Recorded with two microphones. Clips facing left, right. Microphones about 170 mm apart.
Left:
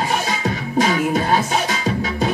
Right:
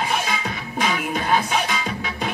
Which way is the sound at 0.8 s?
40° left (ahead or behind).